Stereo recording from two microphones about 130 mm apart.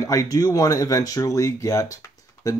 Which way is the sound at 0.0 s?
25° left (ahead or behind).